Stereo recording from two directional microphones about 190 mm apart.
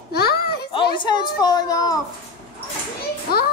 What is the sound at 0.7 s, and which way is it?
A woman's voice, 25° left (ahead or behind).